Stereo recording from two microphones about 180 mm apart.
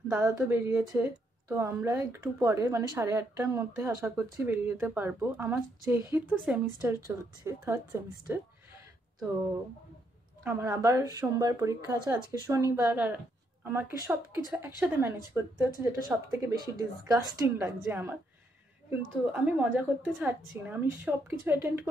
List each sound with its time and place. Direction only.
0.1 s a woman's voice: 10° right (ahead or behind)
6.3 s speech: centre (ahead or behind)
6.8 s a woman's voice: 15° right (ahead or behind)
10.4 s a woman's voice: 15° right (ahead or behind)
16.5 s a woman's voice: 20° right (ahead or behind)
19.3 s a woman's voice: 10° right (ahead or behind)